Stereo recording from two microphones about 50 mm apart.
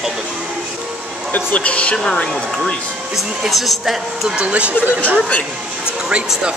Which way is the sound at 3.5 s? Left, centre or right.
Centre.